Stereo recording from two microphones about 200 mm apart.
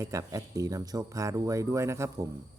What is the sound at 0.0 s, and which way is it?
Speech, 15° right (ahead or behind).